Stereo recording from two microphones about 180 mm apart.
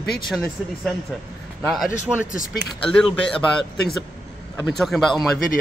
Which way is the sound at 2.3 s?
50° left (ahead or behind).